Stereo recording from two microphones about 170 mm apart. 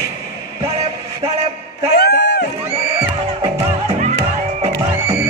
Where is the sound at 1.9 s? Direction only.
75° left (ahead or behind).